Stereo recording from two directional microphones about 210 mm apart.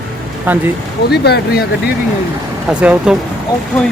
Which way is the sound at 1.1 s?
50° left (ahead or behind).